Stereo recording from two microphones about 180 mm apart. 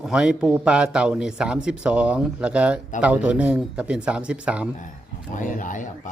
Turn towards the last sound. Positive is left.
turn(degrees=45)  # may be behind; listen again after turning